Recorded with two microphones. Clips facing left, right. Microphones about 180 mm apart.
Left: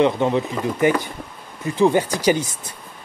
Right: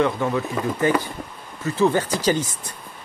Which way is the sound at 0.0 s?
20° left (ahead or behind).